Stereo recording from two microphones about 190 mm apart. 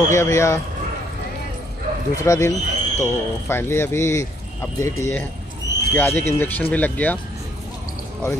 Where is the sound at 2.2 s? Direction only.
15° left (ahead or behind).